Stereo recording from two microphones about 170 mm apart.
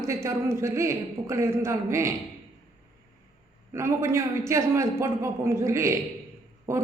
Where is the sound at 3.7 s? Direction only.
15° right (ahead or behind).